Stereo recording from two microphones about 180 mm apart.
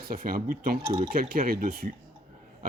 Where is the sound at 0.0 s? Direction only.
55° right (ahead or behind).